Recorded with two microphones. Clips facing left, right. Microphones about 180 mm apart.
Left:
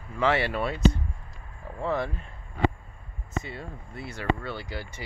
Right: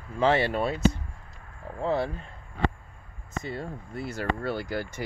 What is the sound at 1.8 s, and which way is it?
Speech, 30° right (ahead or behind).